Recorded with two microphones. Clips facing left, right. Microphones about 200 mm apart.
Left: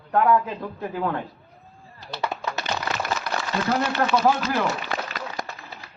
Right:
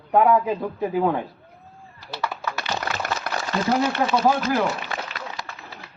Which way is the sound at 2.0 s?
20° left (ahead or behind).